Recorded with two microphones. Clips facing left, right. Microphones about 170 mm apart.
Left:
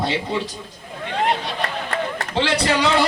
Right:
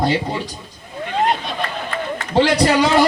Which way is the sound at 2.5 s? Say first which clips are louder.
Right 1 dB; 40° right (ahead or behind).